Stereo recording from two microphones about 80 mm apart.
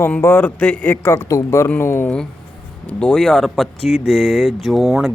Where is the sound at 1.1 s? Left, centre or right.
Left.